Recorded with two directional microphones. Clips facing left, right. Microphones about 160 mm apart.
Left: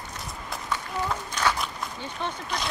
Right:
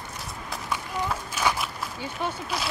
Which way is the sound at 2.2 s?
5° right (ahead or behind).